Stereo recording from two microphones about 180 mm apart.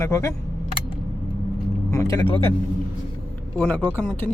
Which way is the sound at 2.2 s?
30° left (ahead or behind).